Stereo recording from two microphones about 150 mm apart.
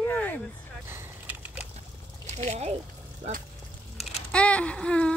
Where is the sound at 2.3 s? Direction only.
45° right (ahead or behind).